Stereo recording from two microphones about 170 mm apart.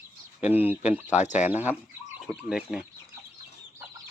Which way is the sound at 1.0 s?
45° left (ahead or behind).